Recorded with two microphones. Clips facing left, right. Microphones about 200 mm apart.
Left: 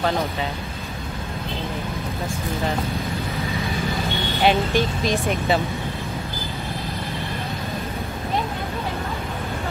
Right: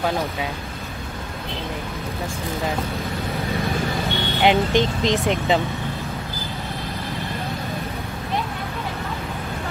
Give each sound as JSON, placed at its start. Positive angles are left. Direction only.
{"t": 4.4, "sound": "speech", "side_deg": -15}